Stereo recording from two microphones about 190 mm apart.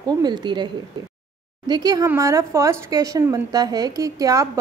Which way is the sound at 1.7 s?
20° right (ahead or behind).